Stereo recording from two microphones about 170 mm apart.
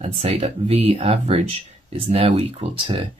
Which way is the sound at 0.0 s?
40° right (ahead or behind).